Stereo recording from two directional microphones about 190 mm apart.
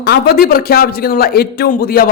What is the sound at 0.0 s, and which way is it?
A man's voice, 55° left (ahead or behind).